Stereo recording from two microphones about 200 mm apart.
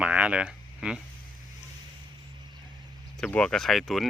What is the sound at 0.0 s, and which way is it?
Speech, 5° right (ahead or behind).